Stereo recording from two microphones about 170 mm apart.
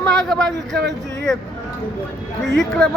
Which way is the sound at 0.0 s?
5° left (ahead or behind).